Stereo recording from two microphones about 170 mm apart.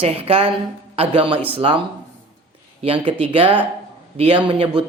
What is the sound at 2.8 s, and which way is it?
A man's voice, 30° right (ahead or behind).